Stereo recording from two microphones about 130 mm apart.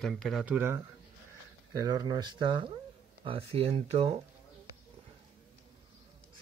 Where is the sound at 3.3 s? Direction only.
45° right (ahead or behind).